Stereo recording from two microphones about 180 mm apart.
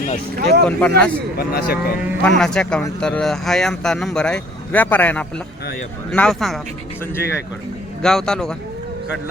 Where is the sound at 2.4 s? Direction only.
5° left (ahead or behind).